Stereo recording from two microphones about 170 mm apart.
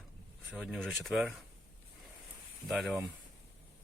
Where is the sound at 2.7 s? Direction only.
Centre (ahead or behind).